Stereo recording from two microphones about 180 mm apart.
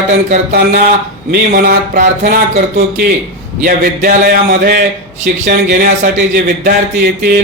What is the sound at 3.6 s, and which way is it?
A man's voice, 55° right (ahead or behind).